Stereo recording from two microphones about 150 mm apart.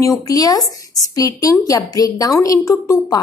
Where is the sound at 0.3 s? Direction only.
25° left (ahead or behind).